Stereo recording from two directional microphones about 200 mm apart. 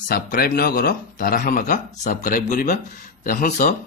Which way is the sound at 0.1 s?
50° left (ahead or behind).